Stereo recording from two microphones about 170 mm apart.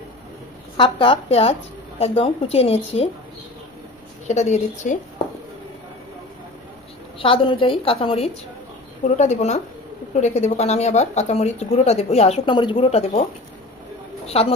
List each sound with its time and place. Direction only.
0.7 s speech: 30° left (ahead or behind)
4.3 s a woman's voice: 45° left (ahead or behind)
7.2 s a woman's voice: 30° left (ahead or behind)